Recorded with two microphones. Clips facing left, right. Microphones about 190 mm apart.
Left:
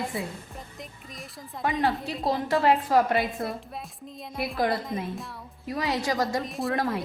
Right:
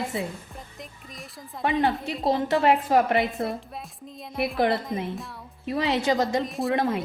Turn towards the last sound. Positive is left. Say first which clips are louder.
# right 3 dB
turn(degrees=-20)  # may be behind; listen again after turning